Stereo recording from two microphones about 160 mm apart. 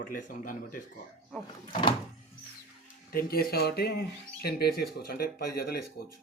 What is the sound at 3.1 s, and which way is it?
Speech, 70° left (ahead or behind).